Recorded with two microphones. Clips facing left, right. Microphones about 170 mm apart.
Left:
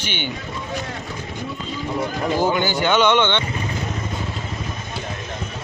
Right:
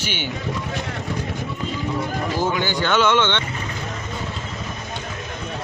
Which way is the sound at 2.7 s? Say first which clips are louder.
Even; 15° left (ahead or behind).